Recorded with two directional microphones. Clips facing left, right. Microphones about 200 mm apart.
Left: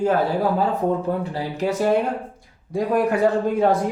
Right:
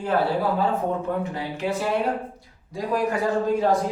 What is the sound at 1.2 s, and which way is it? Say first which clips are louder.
Speech: left 3 dB; 35° left (ahead or behind).